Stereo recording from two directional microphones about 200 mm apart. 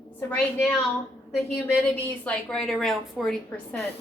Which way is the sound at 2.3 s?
5° left (ahead or behind).